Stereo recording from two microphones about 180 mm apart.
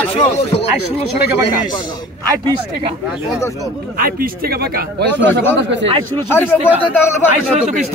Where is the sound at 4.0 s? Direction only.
55° right (ahead or behind).